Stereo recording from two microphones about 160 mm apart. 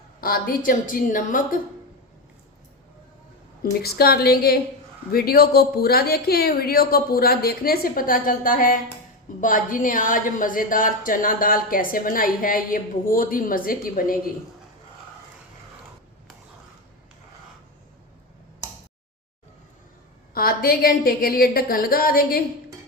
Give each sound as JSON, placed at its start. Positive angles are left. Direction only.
{"t": 0.2, "sound": "a woman's voice", "side_deg": 65}
{"t": 3.8, "sound": "a woman's voice", "side_deg": 75}
{"t": 20.3, "sound": "a woman's voice", "side_deg": 65}